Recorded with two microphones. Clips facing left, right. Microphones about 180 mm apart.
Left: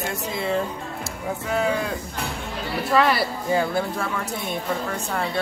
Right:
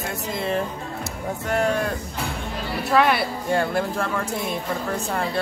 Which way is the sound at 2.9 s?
Centre (ahead or behind).